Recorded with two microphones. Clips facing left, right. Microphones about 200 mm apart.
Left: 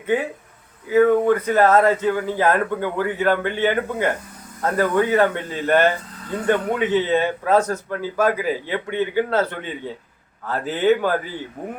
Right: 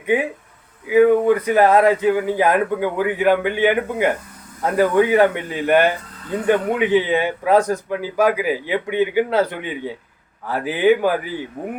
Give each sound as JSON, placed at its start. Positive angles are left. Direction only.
{"t": 0.9, "sound": "a man's voice", "side_deg": -15}